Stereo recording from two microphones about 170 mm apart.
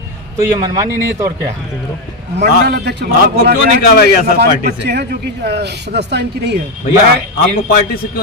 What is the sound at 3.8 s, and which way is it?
Speech, 60° left (ahead or behind).